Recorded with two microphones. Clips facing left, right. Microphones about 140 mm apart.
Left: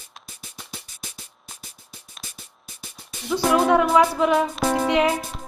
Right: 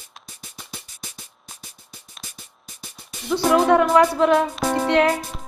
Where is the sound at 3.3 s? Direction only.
5° left (ahead or behind).